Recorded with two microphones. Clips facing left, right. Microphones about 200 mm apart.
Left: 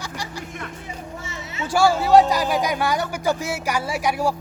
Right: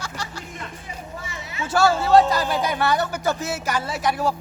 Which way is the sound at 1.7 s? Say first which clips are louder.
Left 1 dB; 10° left (ahead or behind).